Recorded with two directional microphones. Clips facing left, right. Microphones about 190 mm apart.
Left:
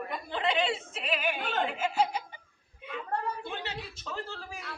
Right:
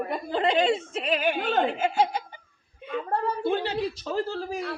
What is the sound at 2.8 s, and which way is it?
A woman's voice, 40° right (ahead or behind).